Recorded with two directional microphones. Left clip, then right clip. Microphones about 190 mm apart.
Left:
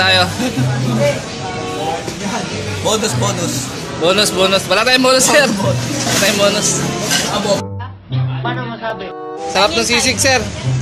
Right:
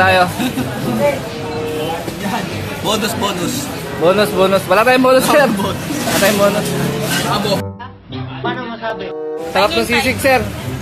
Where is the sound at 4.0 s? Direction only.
5° right (ahead or behind).